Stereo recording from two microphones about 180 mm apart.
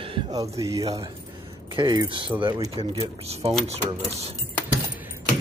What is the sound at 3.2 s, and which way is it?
Speech, 35° right (ahead or behind).